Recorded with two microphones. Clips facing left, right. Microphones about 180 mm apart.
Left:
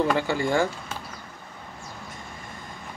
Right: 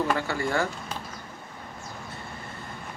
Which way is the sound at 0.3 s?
15° left (ahead or behind).